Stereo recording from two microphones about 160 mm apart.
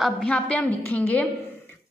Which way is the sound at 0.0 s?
5° left (ahead or behind).